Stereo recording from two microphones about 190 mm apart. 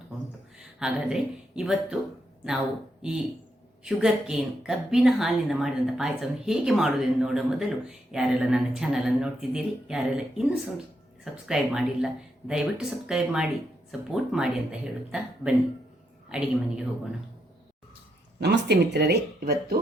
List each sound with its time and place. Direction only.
0.8 s a woman's voice: 5° right (ahead or behind)
3.0 s a woman's voice: 5° right (ahead or behind)
18.3 s speech: 60° right (ahead or behind)